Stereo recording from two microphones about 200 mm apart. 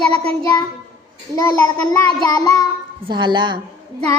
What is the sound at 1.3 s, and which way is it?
Child singing, 15° left (ahead or behind).